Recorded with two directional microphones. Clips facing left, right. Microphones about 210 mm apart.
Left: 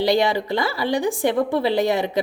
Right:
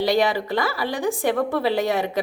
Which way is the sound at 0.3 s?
20° left (ahead or behind).